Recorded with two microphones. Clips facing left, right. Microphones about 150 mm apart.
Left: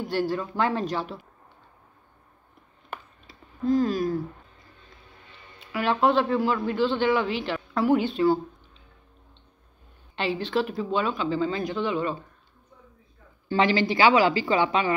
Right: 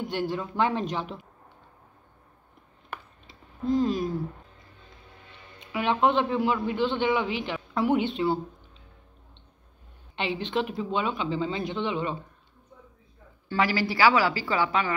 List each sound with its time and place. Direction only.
0.0 s a man's voice: 20° right (ahead or behind)
3.3 s a sound: 25° right (ahead or behind)
5.6 s a man's voice: 20° right (ahead or behind)
10.1 s a man's voice: 20° right (ahead or behind)
13.5 s a woman's voice: 25° left (ahead or behind)